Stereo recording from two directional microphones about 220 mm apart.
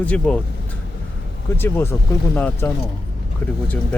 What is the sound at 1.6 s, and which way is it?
Speech, 10° left (ahead or behind).